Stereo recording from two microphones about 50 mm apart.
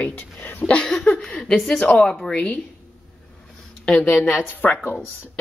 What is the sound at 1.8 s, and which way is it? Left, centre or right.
Speech, centre.